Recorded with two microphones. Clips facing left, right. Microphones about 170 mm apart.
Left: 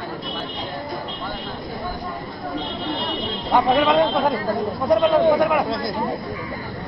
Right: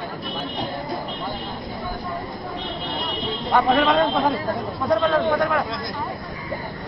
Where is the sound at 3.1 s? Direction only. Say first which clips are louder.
Even; 20° left (ahead or behind).